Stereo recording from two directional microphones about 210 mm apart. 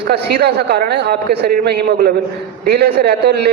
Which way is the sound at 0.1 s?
50° right (ahead or behind).